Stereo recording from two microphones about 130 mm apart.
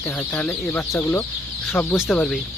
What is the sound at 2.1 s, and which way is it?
Speech, 5° left (ahead or behind).